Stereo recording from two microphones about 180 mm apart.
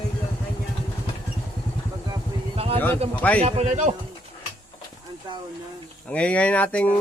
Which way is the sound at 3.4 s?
40° right (ahead or behind).